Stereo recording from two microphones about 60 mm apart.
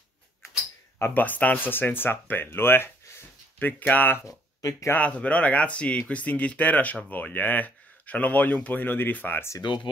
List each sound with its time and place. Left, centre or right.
1.1 s speech: left
4.3 s speech: left
4.9 s speech: left